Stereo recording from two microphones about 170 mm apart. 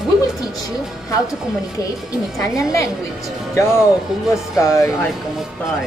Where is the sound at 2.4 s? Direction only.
20° left (ahead or behind).